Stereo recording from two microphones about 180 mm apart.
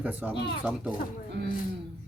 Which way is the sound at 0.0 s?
10° right (ahead or behind).